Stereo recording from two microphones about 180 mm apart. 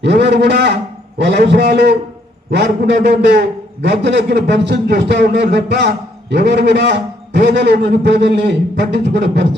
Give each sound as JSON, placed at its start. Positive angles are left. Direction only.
{"t": 0.0, "sound": "a man's voice", "side_deg": -70}